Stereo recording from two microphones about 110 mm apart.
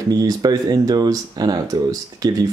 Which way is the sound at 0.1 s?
35° right (ahead or behind).